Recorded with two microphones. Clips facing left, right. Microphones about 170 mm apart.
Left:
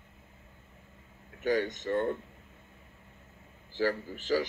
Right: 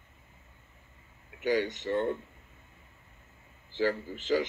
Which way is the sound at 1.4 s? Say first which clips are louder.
Even; 45° left (ahead or behind).